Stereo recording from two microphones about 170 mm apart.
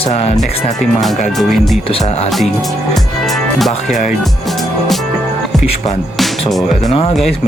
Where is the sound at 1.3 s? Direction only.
Centre (ahead or behind).